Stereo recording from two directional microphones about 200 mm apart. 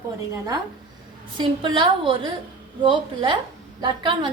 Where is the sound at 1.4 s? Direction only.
25° right (ahead or behind).